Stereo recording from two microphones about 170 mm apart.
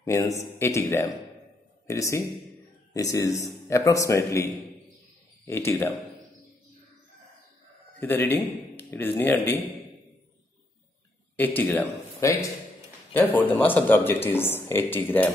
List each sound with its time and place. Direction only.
0.0 s a man's voice: 15° left (ahead or behind)
8.0 s a man's voice: 10° left (ahead or behind)
11.3 s a man's voice: 10° left (ahead or behind)